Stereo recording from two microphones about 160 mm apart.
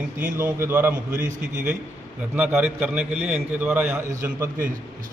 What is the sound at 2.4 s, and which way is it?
A man's voice, 10° right (ahead or behind).